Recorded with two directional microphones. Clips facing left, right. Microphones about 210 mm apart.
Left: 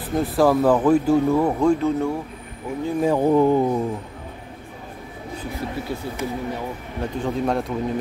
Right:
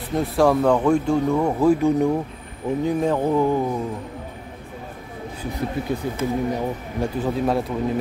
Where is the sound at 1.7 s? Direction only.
15° right (ahead or behind).